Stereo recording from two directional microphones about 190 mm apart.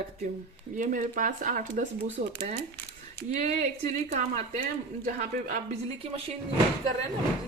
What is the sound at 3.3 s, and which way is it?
Speech, 35° right (ahead or behind).